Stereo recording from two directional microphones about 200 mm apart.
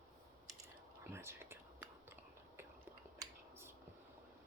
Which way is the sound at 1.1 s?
10° right (ahead or behind).